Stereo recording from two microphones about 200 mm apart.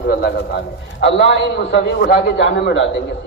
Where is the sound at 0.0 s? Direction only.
50° left (ahead or behind).